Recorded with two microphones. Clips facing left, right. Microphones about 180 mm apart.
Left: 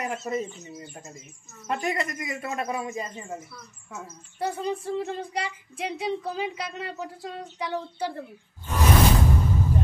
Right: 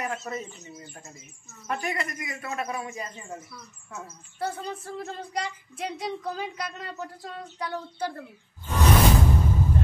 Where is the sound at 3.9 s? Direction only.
15° left (ahead or behind).